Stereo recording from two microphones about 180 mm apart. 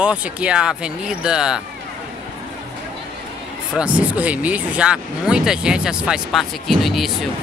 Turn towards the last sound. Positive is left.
turn(degrees=0)  # may be behind; listen again after turning